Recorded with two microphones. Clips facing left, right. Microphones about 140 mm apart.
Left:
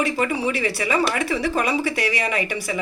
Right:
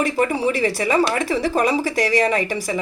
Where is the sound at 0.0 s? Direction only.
40° right (ahead or behind).